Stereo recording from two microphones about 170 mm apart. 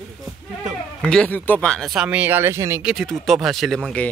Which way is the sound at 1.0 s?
5° left (ahead or behind).